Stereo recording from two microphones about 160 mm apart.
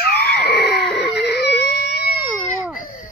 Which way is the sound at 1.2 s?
90° left.